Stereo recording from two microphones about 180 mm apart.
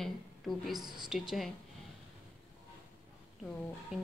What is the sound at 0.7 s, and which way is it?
Speech, 25° right (ahead or behind).